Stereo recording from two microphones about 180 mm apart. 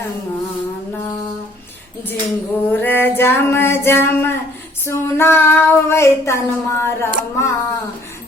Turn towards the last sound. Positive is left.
turn(degrees=15)  # may be behind; listen again after turning